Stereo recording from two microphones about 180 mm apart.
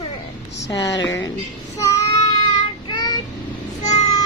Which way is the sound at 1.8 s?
15° left (ahead or behind).